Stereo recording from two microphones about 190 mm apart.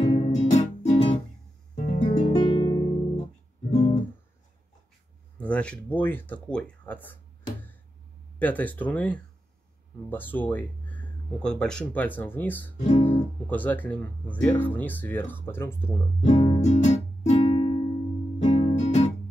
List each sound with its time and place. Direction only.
0.0 s music: 25° left (ahead or behind)
0.3 s music: 35° left (ahead or behind)
1.9 s guitar: 25° left (ahead or behind)
3.7 s guitar: 40° left (ahead or behind)
5.4 s speech: 5° left (ahead or behind)
8.4 s speech: 10° left (ahead or behind)
12.7 s guitar: 35° left (ahead or behind)
13.1 s speech: 10° left (ahead or behind)
16.3 s music: 25° left (ahead or behind)
16.6 s music: 40° left (ahead or behind)
17.5 s music: 25° left (ahead or behind)
18.8 s music: 35° left (ahead or behind)